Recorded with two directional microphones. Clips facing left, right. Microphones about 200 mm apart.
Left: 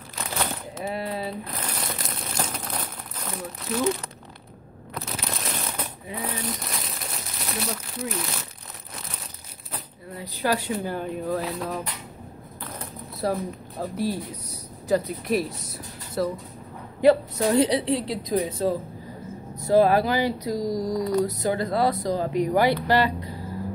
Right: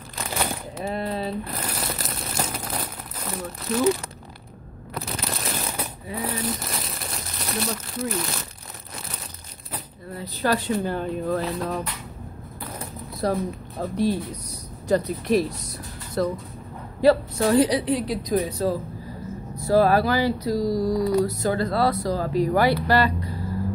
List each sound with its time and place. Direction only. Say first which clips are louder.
0.3 s a sound: right 2 dB; 10° right (ahead or behind)
0.8 s speech: right 2 dB; 5° left (ahead or behind)
1.4 s crumpling: right 2 dB; 10° right (ahead or behind)
4.9 s a sound: right 2 dB; centre (ahead or behind)
6.2 s crumpling: right 3 dB; 5° right (ahead or behind)
10.1 s speech: right 2 dB; 15° left (ahead or behind)
13.2 s speech: right 2 dB; 5° left (ahead or behind)
17.0 s a woman's voice: even; 20° left (ahead or behind)